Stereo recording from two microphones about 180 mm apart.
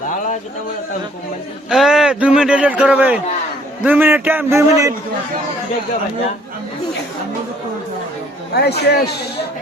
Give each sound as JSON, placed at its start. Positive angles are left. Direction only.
{"t": 1.7, "sound": "speech", "side_deg": 0}
{"t": 8.5, "sound": "speech", "side_deg": 65}